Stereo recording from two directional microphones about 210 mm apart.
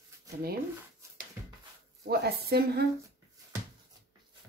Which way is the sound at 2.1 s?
50° right (ahead or behind).